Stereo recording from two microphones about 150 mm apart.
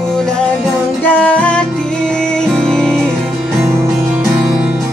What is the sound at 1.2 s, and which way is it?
Music, 10° left (ahead or behind).